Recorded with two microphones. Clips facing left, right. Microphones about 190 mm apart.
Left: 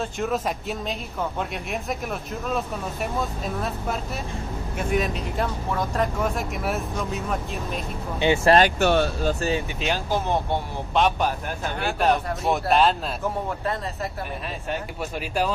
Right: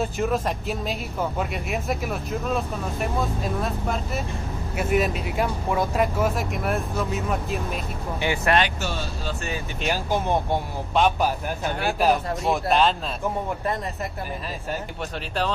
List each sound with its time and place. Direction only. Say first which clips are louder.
0.0 s speech: right 2 dB; centre (ahead or behind)
8.2 s speech: left 5 dB; 25° left (ahead or behind)
8.7 s speech: left 10 dB; 60° left (ahead or behind)
9.3 s speech: left 6 dB; 35° left (ahead or behind)
11.0 s speech: right 1 dB; 5° right (ahead or behind)